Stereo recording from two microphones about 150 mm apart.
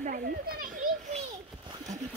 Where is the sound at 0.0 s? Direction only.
70° right (ahead or behind).